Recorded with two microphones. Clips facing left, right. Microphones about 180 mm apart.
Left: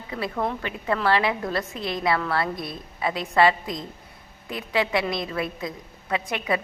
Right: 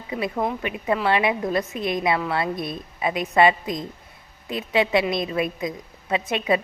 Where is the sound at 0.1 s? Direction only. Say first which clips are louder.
Right 2 dB; 20° right (ahead or behind).